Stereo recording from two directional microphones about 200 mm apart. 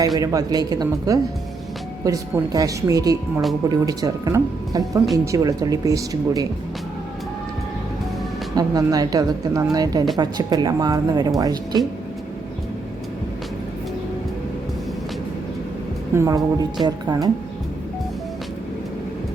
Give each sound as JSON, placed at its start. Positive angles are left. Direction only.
{"t": 0.2, "sound": "speech", "side_deg": -15}
{"t": 8.5, "sound": "speech", "side_deg": -20}
{"t": 16.1, "sound": "speech", "side_deg": -15}